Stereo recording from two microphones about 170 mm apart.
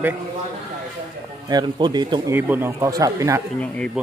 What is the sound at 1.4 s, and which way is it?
Speech, 25° right (ahead or behind).